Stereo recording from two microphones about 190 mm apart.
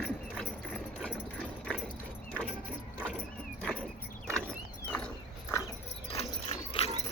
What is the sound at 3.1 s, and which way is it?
Vehicle, 5° left (ahead or behind).